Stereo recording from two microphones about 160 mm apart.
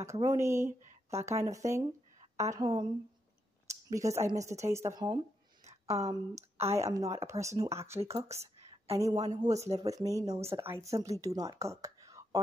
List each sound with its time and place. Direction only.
0.0 s speech: 20° right (ahead or behind)